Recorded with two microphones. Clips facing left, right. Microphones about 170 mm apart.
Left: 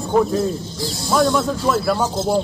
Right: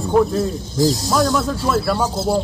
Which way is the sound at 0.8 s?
40° right (ahead or behind).